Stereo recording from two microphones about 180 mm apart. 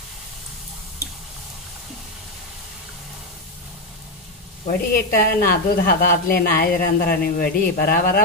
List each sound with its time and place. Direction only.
4.6 s speech: 55° left (ahead or behind)